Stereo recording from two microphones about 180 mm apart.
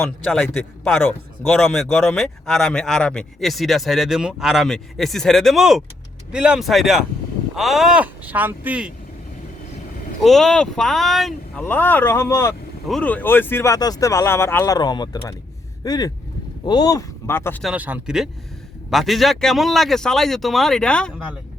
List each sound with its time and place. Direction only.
0.0 s speech: 5° left (ahead or behind)
1.5 s speech: centre (ahead or behind)
10.2 s speech: centre (ahead or behind)
17.6 s speech: 5° right (ahead or behind)